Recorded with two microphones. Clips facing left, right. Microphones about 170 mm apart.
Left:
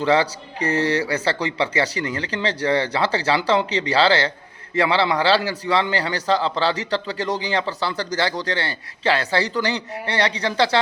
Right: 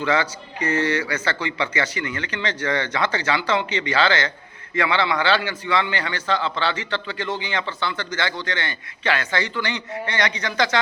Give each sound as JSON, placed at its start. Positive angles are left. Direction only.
{"t": 0.0, "sound": "a man's voice", "side_deg": 35}